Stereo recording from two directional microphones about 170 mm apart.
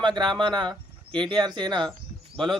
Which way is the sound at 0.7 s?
5° left (ahead or behind).